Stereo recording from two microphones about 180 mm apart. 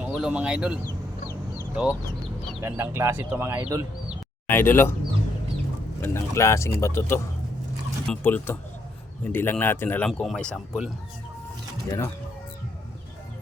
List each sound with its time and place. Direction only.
0.0 s speech: 5° right (ahead or behind)
2.6 s speech: 15° right (ahead or behind)
4.4 s speech: 10° left (ahead or behind)
6.0 s speech: 15° left (ahead or behind)
11.9 s speech: 15° left (ahead or behind)